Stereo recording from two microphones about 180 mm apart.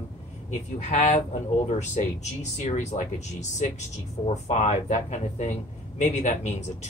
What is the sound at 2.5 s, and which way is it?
Speech, 40° left (ahead or behind).